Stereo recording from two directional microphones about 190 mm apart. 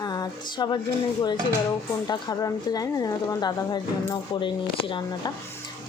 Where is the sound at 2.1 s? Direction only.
20° left (ahead or behind).